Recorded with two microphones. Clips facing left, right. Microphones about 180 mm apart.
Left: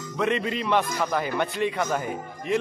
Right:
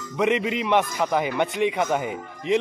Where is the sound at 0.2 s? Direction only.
15° right (ahead or behind).